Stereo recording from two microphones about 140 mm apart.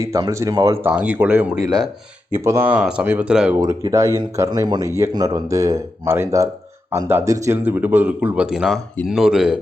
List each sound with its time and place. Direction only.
0.0 s speech: 20° right (ahead or behind)
1.6 s speech: 30° right (ahead or behind)
2.3 s speech: 20° right (ahead or behind)
2.7 s speech: 5° right (ahead or behind)
3.6 s speech: 20° right (ahead or behind); by 9.6 s 5° right (ahead or behind)